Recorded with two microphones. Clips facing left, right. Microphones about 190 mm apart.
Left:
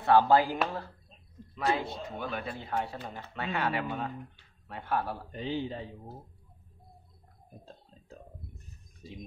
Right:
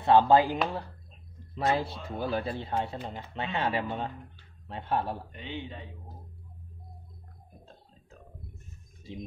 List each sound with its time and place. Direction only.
0.0 s speech: 20° right (ahead or behind)
1.5 s a man's voice: 35° right (ahead or behind)
5.3 s a man's voice: 35° left (ahead or behind)